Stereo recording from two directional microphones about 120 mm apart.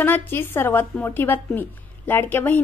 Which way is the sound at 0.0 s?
15° left (ahead or behind).